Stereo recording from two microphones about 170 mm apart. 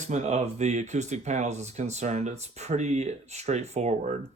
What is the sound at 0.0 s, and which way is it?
Speech, 40° right (ahead or behind).